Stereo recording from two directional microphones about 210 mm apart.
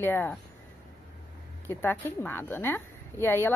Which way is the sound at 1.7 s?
10° left (ahead or behind).